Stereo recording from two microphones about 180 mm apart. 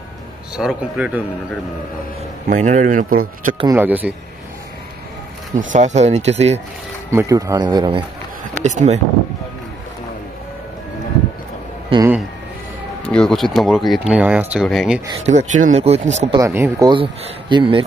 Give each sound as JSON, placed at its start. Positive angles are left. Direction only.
{"t": 0.6, "sound": "speech", "side_deg": -5}
{"t": 2.5, "sound": "speech", "side_deg": -40}
{"t": 3.7, "sound": "speech", "side_deg": -10}
{"t": 5.6, "sound": "speech", "side_deg": -45}
{"t": 7.1, "sound": "a man's voice", "side_deg": -15}
{"t": 8.6, "sound": "speech", "side_deg": -40}
{"t": 11.9, "sound": "speech", "side_deg": -30}
{"t": 13.1, "sound": "speech", "side_deg": 0}
{"t": 15.2, "sound": "speech", "side_deg": -40}
{"t": 16.3, "sound": "speech", "side_deg": -15}
{"t": 16.9, "sound": "a man's voice", "side_deg": -30}